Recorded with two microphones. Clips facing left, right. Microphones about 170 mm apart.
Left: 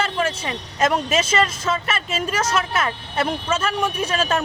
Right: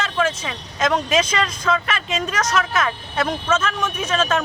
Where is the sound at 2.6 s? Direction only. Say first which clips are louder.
Right 4 dB; 40° left (ahead or behind).